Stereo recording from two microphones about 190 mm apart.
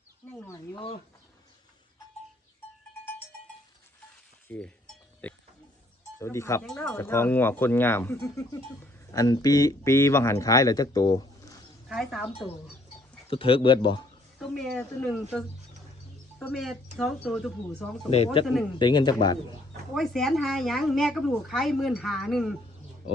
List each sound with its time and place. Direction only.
0.3 s speech: 10° left (ahead or behind)
4.4 s cowbell: 5° left (ahead or behind)
5.2 s speech: 10° left (ahead or behind)
11.9 s speech: centre (ahead or behind)
12.3 s speech: 30° left (ahead or behind)
14.3 s speech: 5° left (ahead or behind)
18.4 s speech: 30° left (ahead or behind)
19.9 s speech: centre (ahead or behind)